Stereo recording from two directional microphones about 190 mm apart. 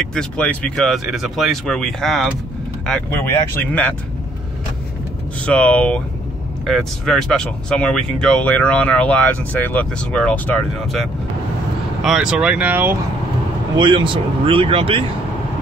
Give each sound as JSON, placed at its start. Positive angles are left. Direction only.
{"t": 0.1, "sound": "speech", "side_deg": 5}
{"t": 5.4, "sound": "speech", "side_deg": 5}
{"t": 13.7, "sound": "speech", "side_deg": -25}